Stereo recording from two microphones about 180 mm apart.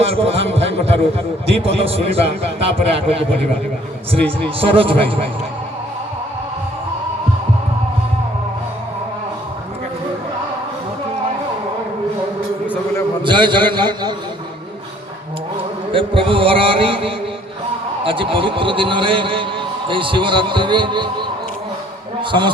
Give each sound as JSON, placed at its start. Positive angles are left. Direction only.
{"t": 0.1, "sound": "a man's voice", "side_deg": -35}
{"t": 4.2, "sound": "a man's voice", "side_deg": 5}
{"t": 4.7, "sound": "a man's voice", "side_deg": -30}
{"t": 12.6, "sound": "a sound", "side_deg": 10}
{"t": 13.2, "sound": "a sound", "side_deg": -25}
{"t": 15.5, "sound": "a man's voice", "side_deg": -30}